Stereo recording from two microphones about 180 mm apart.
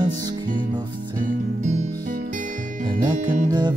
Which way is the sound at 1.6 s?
40° right (ahead or behind).